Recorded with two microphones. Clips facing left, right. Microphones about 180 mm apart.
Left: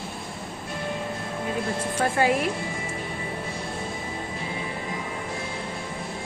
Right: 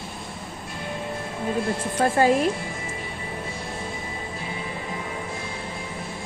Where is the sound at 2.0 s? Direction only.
40° right (ahead or behind).